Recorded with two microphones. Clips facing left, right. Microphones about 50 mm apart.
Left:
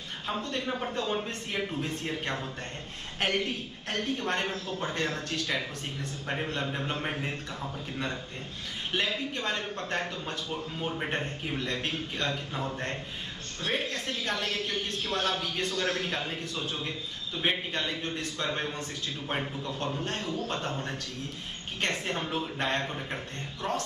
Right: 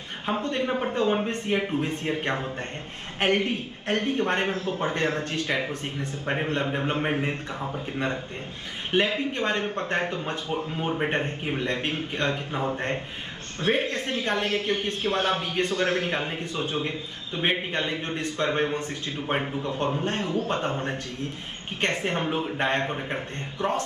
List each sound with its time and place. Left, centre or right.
0.3 s speech: right